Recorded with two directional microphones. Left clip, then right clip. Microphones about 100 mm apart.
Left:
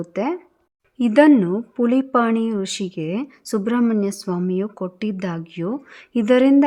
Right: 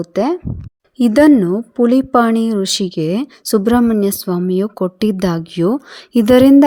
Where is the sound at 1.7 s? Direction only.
40° right (ahead or behind).